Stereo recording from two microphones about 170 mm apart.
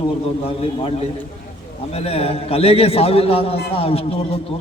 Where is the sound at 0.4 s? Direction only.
35° left (ahead or behind).